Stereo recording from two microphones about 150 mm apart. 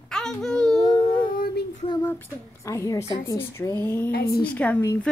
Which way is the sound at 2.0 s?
20° left (ahead or behind).